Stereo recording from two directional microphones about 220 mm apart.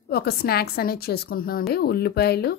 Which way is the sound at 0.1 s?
45° left (ahead or behind).